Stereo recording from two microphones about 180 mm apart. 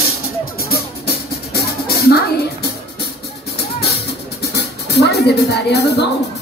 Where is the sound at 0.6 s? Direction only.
60° left (ahead or behind).